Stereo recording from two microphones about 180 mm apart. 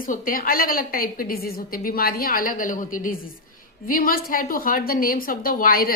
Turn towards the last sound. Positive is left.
turn(degrees=55)  # may be behind; listen again after turning